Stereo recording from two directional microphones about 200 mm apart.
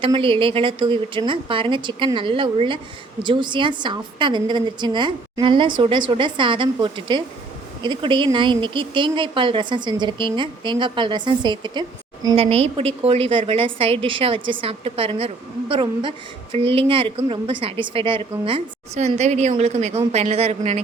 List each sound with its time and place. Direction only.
0.0 s a woman's voice: 25° right (ahead or behind)